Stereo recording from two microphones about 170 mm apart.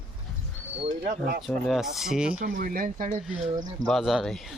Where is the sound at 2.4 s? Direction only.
55° right (ahead or behind).